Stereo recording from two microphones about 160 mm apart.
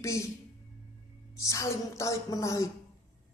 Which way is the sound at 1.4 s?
20° left (ahead or behind).